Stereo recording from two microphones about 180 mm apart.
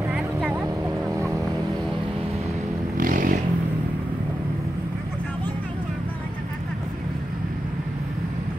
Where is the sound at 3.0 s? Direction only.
50° right (ahead or behind).